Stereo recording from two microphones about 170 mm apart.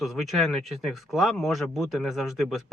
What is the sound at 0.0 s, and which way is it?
Speech, centre (ahead or behind).